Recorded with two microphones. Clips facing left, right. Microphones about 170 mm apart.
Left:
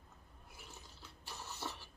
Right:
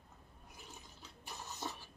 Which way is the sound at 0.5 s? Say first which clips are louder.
Right 1 dB; 20° right (ahead or behind).